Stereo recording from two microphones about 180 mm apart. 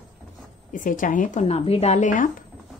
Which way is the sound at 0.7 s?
50° left (ahead or behind).